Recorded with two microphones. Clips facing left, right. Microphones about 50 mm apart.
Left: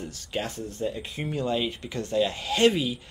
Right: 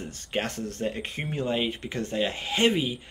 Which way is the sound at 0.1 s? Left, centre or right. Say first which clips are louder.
Right 4 dB; right.